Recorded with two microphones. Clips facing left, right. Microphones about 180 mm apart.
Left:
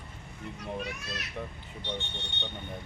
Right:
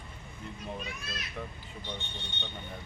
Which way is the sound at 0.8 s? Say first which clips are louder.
Left 4 dB; 70° left (ahead or behind).